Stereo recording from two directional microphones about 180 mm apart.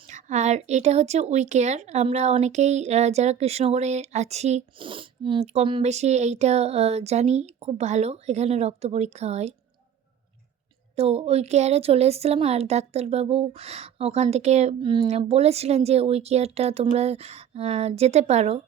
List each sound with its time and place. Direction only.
0.1 s a woman's voice: 40° right (ahead or behind)
10.9 s a woman's voice: 35° right (ahead or behind)